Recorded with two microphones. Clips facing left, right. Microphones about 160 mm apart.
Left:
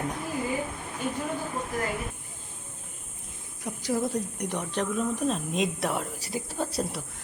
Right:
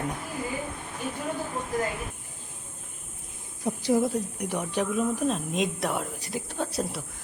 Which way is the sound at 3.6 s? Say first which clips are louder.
Right 5 dB; 25° right (ahead or behind).